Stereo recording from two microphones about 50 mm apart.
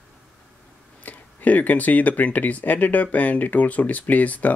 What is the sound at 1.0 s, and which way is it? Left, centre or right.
Speech, left.